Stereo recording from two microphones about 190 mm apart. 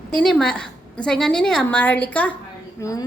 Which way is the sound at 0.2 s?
5° left (ahead or behind).